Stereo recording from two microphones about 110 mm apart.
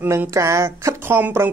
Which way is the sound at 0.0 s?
20° right (ahead or behind).